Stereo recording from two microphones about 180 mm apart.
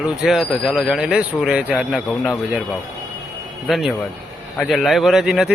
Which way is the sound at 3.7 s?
Centre (ahead or behind).